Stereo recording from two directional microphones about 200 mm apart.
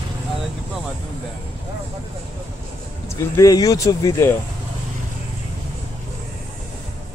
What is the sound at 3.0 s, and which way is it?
Speech, 15° left (ahead or behind).